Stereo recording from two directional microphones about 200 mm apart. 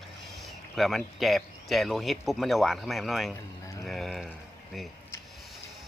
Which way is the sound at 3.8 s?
Centre (ahead or behind).